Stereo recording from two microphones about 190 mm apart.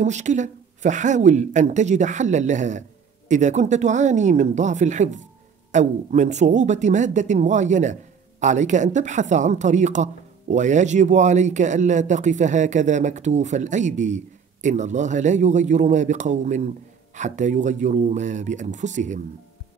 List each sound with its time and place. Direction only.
0.0 s speech: 40° right (ahead or behind)